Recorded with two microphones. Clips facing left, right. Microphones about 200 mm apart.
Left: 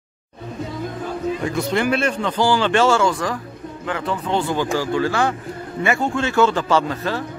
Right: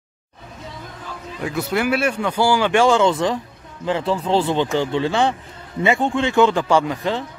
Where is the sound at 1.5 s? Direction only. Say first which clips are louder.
Right 1 dB; 5° right (ahead or behind).